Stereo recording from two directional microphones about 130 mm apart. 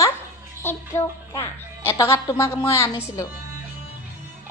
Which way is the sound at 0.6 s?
20° left (ahead or behind).